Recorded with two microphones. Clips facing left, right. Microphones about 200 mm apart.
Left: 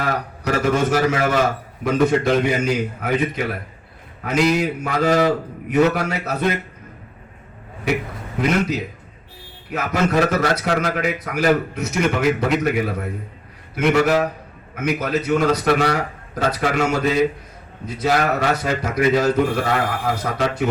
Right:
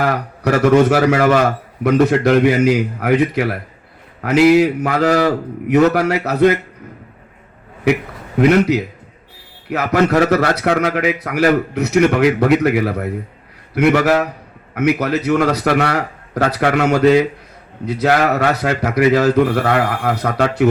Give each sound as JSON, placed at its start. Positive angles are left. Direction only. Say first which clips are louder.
{"t": 0.0, "sound": "a man's voice", "louder": "right 5 dB", "side_deg": -70}
{"t": 4.4, "sound": "speech", "louder": "right 8 dB", "side_deg": -5}
{"t": 4.6, "sound": "a man's voice", "louder": "right 5 dB", "side_deg": -65}
{"t": 8.4, "sound": "a man's voice", "louder": "right 8 dB", "side_deg": -70}